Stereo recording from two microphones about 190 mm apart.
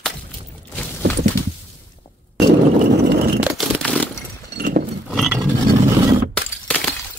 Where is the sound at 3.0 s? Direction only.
60° right (ahead or behind).